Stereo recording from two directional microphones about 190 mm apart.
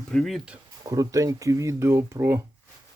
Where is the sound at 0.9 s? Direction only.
20° right (ahead or behind).